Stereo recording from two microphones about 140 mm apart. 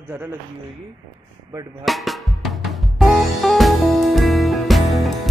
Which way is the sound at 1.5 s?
25° right (ahead or behind).